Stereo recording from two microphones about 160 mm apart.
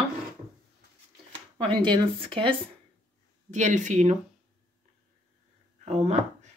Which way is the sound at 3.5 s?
50° right (ahead or behind).